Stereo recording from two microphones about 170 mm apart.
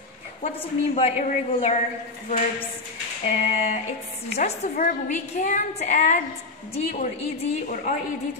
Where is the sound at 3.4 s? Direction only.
45° left (ahead or behind).